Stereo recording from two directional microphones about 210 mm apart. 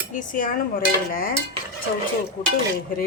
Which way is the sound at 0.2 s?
40° left (ahead or behind).